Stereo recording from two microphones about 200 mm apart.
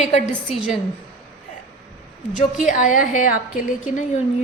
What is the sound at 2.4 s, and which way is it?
A woman's voice, 40° left (ahead or behind).